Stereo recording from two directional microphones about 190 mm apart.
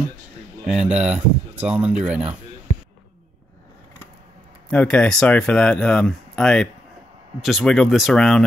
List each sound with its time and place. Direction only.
0.7 s speech: 5° right (ahead or behind)
4.6 s speech: 5° left (ahead or behind)